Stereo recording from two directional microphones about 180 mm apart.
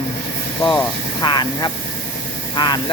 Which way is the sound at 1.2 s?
25° left (ahead or behind).